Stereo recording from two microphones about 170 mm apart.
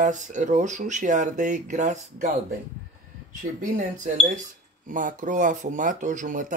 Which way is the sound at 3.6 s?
50° right (ahead or behind).